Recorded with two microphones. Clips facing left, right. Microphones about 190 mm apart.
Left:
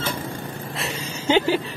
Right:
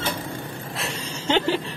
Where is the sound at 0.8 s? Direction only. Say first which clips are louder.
Left 3 dB; 5° left (ahead or behind).